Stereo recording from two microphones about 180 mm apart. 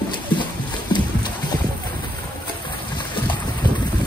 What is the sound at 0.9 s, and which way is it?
Clip-clop, 25° left (ahead or behind).